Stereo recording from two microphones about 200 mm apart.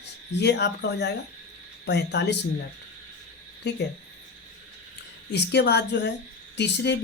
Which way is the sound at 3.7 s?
60° left (ahead or behind).